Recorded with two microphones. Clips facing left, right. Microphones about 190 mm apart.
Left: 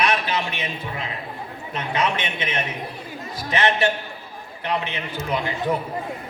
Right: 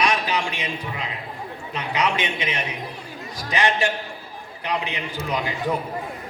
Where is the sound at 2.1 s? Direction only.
15° right (ahead or behind).